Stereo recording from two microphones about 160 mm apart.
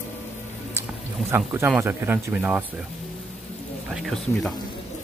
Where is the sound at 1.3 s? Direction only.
15° right (ahead or behind).